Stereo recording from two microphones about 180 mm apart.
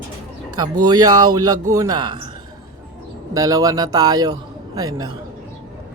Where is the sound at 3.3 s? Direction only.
20° right (ahead or behind).